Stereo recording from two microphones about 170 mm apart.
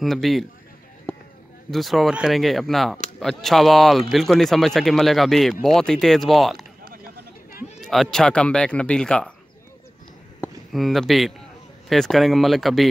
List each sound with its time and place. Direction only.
0.0 s speech: centre (ahead or behind)
1.1 s a sound: 5° left (ahead or behind)
1.7 s speech: centre (ahead or behind)
6.8 s oink: 60° right (ahead or behind)
7.8 s speech: centre (ahead or behind)
10.7 s speech: centre (ahead or behind)